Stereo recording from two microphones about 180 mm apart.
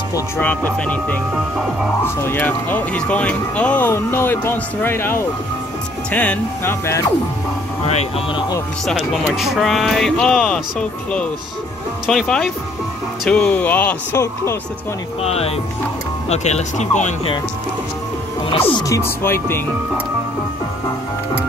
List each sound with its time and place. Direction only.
0.1 s speech: 10° left (ahead or behind)
7.8 s speech: 35° left (ahead or behind)
8.8 s speech: centre (ahead or behind)
15.2 s speech: 35° left (ahead or behind)
18.7 s speech: 20° left (ahead or behind)